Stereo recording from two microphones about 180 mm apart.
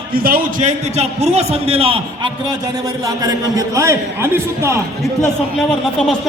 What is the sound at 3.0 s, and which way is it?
A man's voice, 20° right (ahead or behind).